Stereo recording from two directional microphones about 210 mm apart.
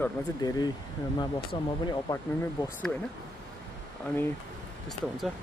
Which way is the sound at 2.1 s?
15° left (ahead or behind).